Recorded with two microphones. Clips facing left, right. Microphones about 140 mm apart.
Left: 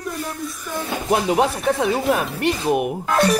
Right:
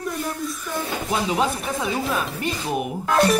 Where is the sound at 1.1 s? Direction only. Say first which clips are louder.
Left 5 dB; 55° left (ahead or behind).